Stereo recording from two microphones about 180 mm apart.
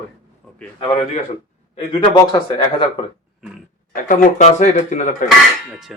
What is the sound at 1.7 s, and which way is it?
A man's voice, 30° left (ahead or behind).